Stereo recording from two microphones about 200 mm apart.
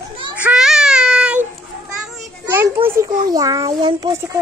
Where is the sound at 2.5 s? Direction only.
10° right (ahead or behind).